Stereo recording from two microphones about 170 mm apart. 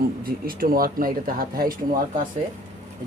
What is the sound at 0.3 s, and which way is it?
Speech, 55° right (ahead or behind).